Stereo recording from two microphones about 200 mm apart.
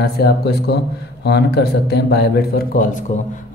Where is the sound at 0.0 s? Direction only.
55° left (ahead or behind).